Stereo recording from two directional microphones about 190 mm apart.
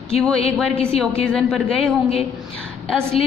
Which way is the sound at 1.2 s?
5° left (ahead or behind).